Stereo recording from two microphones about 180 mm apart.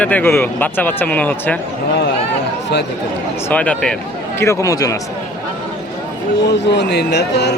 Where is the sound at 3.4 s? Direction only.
5° left (ahead or behind).